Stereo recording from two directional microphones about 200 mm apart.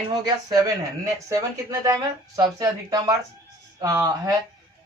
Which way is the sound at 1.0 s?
15° right (ahead or behind).